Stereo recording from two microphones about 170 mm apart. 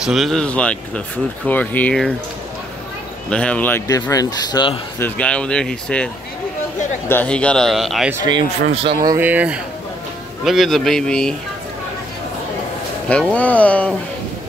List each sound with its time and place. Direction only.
0.0 s speech: centre (ahead or behind)
3.3 s speech: 5° left (ahead or behind); by 4.7 s 25° left (ahead or behind)
4.9 s speech: 10° left (ahead or behind)
7.1 s speech: 10° left (ahead or behind)
8.8 s speech: 20° right (ahead or behind)
9.2 s speech: 10° right (ahead or behind)
13.1 s speech: 10° left (ahead or behind)